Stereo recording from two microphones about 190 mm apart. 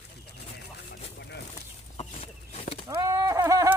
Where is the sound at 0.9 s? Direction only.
60° left (ahead or behind).